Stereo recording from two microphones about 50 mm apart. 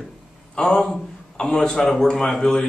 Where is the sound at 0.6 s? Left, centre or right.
Centre.